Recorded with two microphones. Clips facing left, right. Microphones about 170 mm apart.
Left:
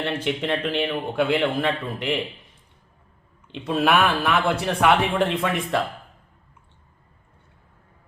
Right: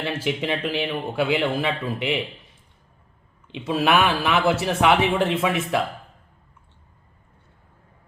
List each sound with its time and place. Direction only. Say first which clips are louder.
0.0 s speech: even; 5° right (ahead or behind)
3.4 s speech: even; centre (ahead or behind)